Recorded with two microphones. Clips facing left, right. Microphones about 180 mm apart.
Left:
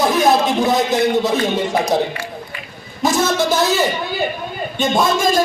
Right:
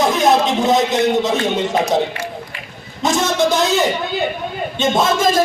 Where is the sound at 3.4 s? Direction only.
20° right (ahead or behind).